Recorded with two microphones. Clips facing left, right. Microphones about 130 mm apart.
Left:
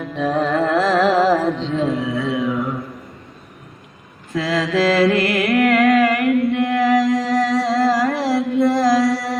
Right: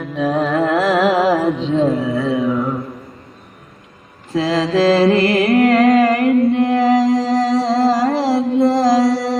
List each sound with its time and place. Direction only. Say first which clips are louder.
0.0 s music: right 2 dB; 5° right (ahead or behind)
1.7 s music: right 4 dB; 30° right (ahead or behind)
4.4 s mantra: right 3 dB; 30° right (ahead or behind)